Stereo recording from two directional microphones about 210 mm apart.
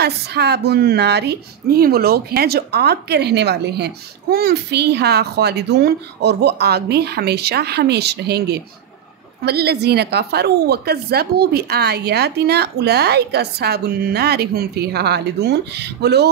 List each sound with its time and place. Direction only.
0.0 s a woman's voice: 50° right (ahead or behind)